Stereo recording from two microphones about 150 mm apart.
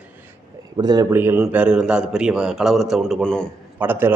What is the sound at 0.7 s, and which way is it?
Speech, 25° right (ahead or behind).